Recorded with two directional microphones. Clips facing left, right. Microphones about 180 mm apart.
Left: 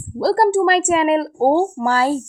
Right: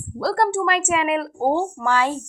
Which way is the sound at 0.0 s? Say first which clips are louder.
Left 5 dB; 30° left (ahead or behind).